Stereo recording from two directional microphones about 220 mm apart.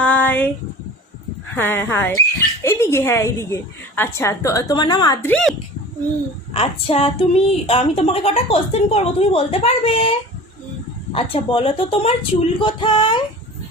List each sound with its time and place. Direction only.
0.0 s a sound: 5° left (ahead or behind)
1.5 s a woman's voice: 10° left (ahead or behind)
6.5 s a woman's voice: 25° left (ahead or behind)